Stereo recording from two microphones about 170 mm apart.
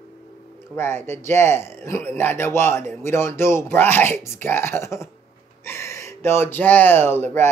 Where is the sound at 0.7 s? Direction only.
15° left (ahead or behind).